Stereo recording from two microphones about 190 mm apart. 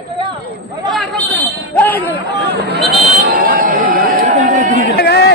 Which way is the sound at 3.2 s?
50° right (ahead or behind).